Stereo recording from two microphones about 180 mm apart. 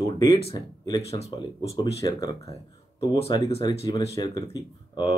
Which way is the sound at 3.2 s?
35° left (ahead or behind).